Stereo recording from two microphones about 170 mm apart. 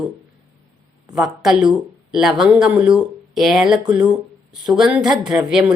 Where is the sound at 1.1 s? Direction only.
Centre (ahead or behind).